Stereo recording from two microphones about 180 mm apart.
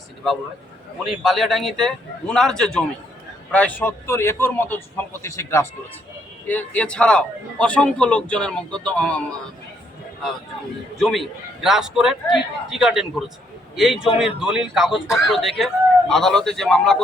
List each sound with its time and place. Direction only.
1.0 s a man's voice: centre (ahead or behind)
10.9 s speech: centre (ahead or behind)
13.9 s speech: 30° left (ahead or behind)
14.2 s speech: 5° right (ahead or behind)